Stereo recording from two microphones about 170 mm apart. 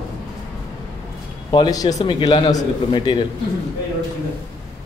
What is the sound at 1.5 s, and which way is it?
Speech, 25° left (ahead or behind).